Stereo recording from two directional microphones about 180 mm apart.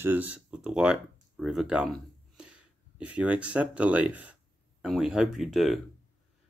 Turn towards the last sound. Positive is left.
turn(degrees=0)  # may be behind; listen again after turning